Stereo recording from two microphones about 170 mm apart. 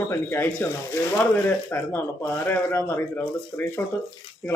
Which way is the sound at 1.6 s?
10° left (ahead or behind).